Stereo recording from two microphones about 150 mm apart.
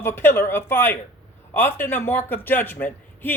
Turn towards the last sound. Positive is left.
turn(degrees=15)  # may be behind; listen again after turning